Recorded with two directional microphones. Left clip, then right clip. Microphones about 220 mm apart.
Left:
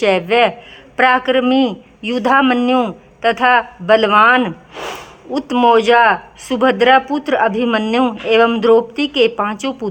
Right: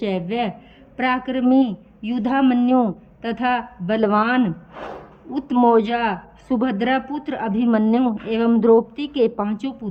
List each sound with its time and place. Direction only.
0.0 s speech: 5° right (ahead or behind)